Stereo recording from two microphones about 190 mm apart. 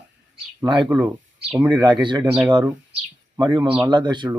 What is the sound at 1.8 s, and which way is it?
Speech, 25° right (ahead or behind).